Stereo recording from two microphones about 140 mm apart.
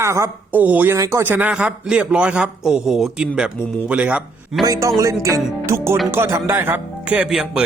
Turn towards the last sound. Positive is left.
turn(degrees=-5)  # may be behind; listen again after turning